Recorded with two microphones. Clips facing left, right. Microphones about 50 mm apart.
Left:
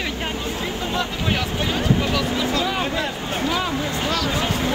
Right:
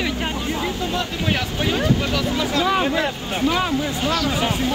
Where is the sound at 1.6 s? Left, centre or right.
Centre.